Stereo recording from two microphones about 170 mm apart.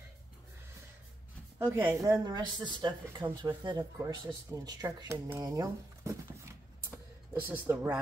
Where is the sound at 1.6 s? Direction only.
15° right (ahead or behind).